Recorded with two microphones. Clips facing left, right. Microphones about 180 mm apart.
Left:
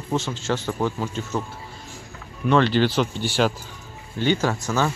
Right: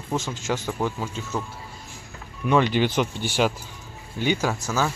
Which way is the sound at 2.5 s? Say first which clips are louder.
Left 2 dB; 10° right (ahead or behind).